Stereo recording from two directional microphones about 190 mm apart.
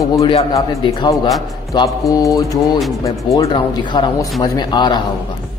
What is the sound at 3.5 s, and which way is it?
Speech, 25° left (ahead or behind).